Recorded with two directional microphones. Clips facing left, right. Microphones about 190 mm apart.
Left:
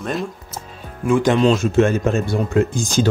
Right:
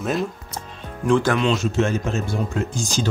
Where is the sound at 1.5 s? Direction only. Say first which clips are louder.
Left 5 dB; 55° left (ahead or behind).